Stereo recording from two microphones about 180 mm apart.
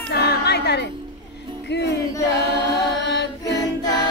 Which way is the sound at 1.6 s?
70° left (ahead or behind).